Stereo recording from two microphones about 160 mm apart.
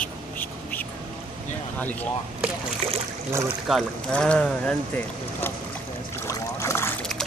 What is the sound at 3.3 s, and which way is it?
Speech, 15° right (ahead or behind).